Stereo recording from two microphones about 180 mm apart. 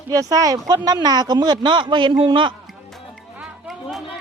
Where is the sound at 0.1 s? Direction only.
20° right (ahead or behind).